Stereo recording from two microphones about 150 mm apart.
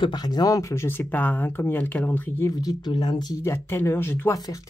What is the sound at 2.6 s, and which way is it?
Speech, 25° left (ahead or behind).